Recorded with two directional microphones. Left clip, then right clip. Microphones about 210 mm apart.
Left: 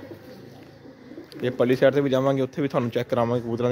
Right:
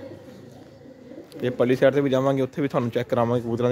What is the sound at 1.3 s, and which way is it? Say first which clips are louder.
Speech: even; centre (ahead or behind).